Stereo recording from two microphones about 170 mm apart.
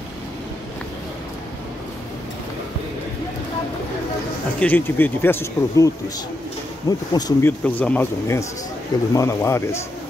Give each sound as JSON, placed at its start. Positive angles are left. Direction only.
{"t": 4.6, "sound": "speech", "side_deg": 10}
{"t": 6.9, "sound": "speech", "side_deg": 20}
{"t": 7.6, "sound": "speech", "side_deg": 10}